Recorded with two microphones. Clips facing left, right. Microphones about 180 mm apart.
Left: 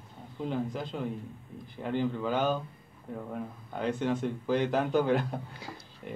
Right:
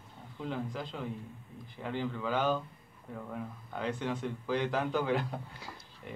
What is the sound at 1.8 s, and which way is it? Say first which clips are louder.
Speech: left 5 dB; 50° left (ahead or behind).